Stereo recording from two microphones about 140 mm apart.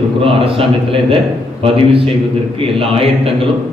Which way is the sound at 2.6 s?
40° right (ahead or behind).